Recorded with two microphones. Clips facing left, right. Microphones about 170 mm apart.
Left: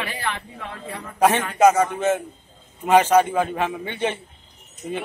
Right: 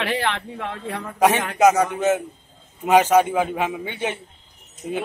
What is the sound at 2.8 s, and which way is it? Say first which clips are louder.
A man's voice: even; 15° right (ahead or behind).